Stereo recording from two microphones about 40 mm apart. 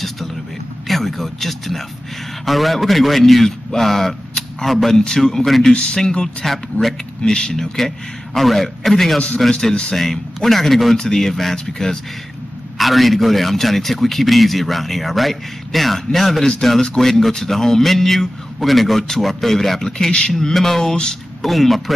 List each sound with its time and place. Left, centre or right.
0.8 s a man's voice: centre
6.4 s speech: centre
7.3 s speech: centre
12.7 s speech: centre
20.1 s speech: left
20.3 s speech: centre
21.4 s speech: centre